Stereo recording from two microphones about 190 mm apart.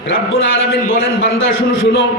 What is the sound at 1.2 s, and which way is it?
Speech, 75° left (ahead or behind).